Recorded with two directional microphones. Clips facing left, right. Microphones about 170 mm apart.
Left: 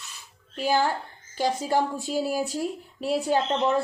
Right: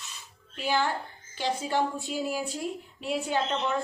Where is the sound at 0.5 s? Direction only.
40° left (ahead or behind).